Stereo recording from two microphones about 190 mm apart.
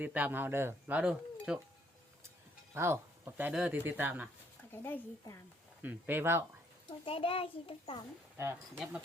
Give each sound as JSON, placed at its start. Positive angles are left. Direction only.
{"t": 0.0, "sound": "speech", "side_deg": -10}
{"t": 2.7, "sound": "speech", "side_deg": -15}
{"t": 4.7, "sound": "speech", "side_deg": 10}
{"t": 5.8, "sound": "speech", "side_deg": -10}
{"t": 7.0, "sound": "a child's voice", "side_deg": 30}